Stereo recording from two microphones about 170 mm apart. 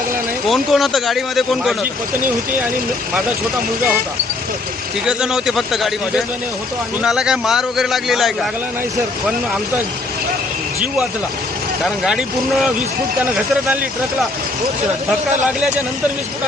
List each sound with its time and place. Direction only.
0.4 s speech: centre (ahead or behind)
5.0 s speech: 5° right (ahead or behind)
11.8 s speech: 5° right (ahead or behind)